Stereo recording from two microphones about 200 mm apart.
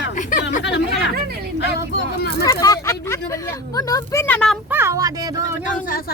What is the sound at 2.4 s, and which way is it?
Speech, 15° left (ahead or behind).